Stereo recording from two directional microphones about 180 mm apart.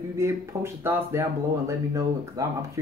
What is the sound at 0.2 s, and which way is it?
Speech, 15° right (ahead or behind).